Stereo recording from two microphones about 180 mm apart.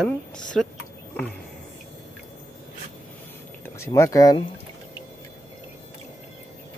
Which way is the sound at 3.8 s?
15° left (ahead or behind).